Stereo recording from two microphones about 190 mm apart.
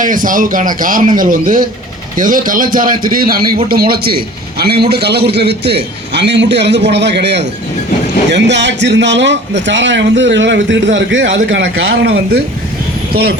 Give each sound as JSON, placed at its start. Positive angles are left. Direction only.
{"t": 0.0, "sound": "a man's voice", "side_deg": -45}